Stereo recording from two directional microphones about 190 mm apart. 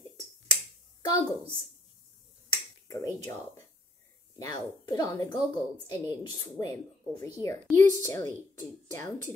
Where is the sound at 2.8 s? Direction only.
15° left (ahead or behind).